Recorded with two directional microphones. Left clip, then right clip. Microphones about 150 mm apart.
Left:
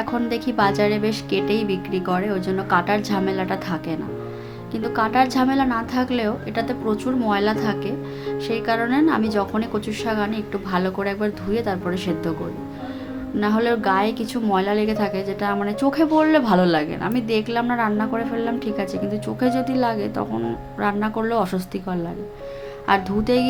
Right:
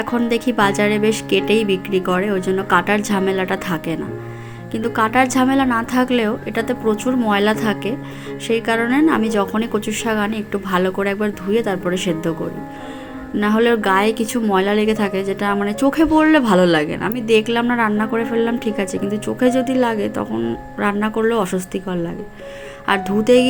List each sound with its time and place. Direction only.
0.0 s a woman's voice: 25° right (ahead or behind)
13.4 s a woman's voice: 25° right (ahead or behind)